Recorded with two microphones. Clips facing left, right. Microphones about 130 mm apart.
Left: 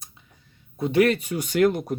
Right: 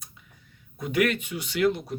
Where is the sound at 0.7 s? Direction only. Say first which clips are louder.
Left 5 dB; 30° left (ahead or behind); by 1.9 s 50° left (ahead or behind).